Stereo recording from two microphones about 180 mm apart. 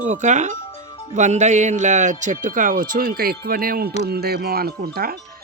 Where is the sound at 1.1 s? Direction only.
40° right (ahead or behind).